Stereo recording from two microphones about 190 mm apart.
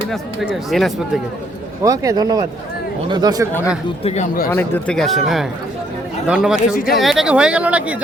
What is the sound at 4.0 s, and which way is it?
Speech, 30° left (ahead or behind).